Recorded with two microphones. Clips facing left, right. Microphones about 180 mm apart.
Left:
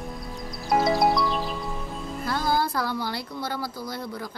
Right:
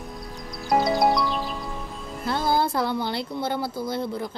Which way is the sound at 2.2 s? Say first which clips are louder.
Right 2 dB; 25° right (ahead or behind).